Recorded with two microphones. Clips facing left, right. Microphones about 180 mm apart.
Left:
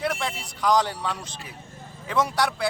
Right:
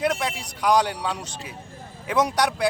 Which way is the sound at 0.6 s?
15° right (ahead or behind).